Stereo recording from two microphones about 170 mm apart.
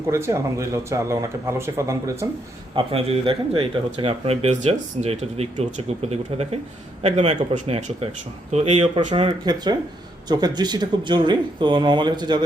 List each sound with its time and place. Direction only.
0.1 s speech: 15° right (ahead or behind)
2.7 s speech: 35° right (ahead or behind)
9.2 s speech: 25° right (ahead or behind)